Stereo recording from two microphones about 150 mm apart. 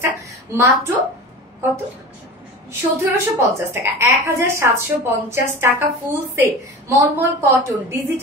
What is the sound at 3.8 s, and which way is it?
A woman's voice, 20° right (ahead or behind).